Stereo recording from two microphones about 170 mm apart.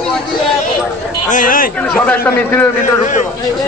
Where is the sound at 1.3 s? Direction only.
55° left (ahead or behind).